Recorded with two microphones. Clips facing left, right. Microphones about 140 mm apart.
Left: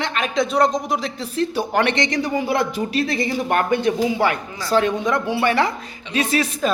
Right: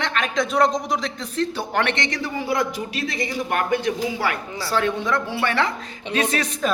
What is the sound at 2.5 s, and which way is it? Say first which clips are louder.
Speech: left 4 dB; 30° left (ahead or behind).